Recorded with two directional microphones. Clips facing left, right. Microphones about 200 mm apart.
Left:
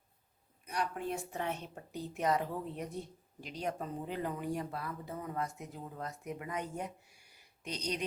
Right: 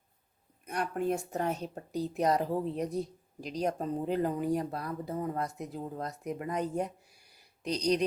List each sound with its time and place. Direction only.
0.6 s a woman's voice: 50° right (ahead or behind)